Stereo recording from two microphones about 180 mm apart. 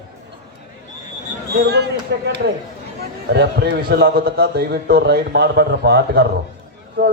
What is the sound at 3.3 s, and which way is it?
A man's voice, 65° right (ahead or behind).